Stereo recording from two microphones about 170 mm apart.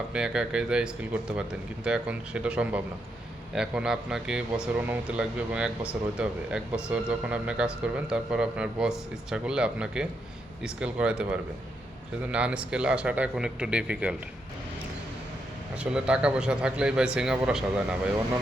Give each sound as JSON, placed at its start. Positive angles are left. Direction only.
{"t": 0.1, "sound": "speech", "side_deg": -5}
{"t": 15.7, "sound": "speech", "side_deg": -5}